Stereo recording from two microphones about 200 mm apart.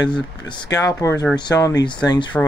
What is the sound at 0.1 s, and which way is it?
Speech, 25° left (ahead or behind).